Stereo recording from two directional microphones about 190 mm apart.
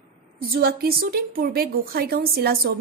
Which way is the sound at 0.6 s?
55° right (ahead or behind).